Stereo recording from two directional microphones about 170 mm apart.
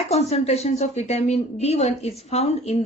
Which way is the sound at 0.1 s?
40° left (ahead or behind).